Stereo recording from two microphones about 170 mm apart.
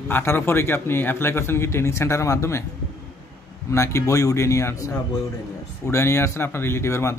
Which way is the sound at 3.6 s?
15° left (ahead or behind).